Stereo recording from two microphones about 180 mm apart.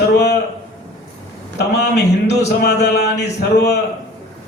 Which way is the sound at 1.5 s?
65° left (ahead or behind).